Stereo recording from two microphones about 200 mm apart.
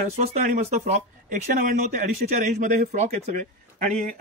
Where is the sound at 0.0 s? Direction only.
40° right (ahead or behind).